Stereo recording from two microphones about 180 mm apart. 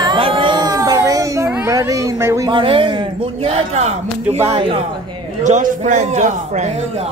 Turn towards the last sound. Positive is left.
turn(degrees=-40)  # may be behind; listen again after turning